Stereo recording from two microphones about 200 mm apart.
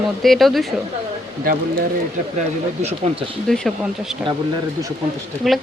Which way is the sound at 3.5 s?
Centre (ahead or behind).